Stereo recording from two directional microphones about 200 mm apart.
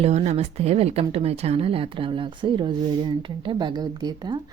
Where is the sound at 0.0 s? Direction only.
35° right (ahead or behind).